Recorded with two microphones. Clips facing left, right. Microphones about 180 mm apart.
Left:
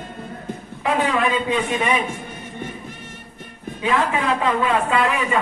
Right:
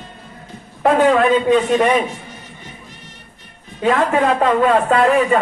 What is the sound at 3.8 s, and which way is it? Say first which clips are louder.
A man's voice: right 5 dB; 45° right (ahead or behind).